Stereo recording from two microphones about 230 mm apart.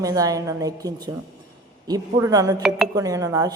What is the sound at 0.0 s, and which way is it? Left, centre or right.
A woman's voice, centre.